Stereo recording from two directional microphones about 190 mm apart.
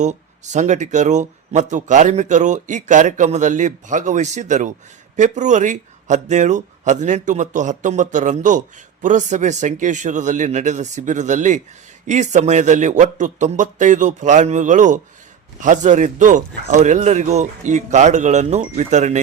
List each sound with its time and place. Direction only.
0.0 s speech: 40° right (ahead or behind)